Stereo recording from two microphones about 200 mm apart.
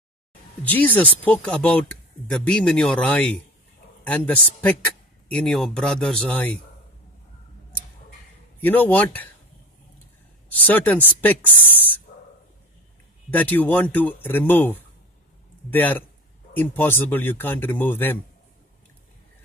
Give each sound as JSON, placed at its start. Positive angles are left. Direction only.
{"t": 0.7, "sound": "speech", "side_deg": 10}
{"t": 8.5, "sound": "speech", "side_deg": 10}
{"t": 10.5, "sound": "speech", "side_deg": 10}
{"t": 12.1, "sound": "a sound", "side_deg": 45}
{"t": 13.3, "sound": "speech", "side_deg": 10}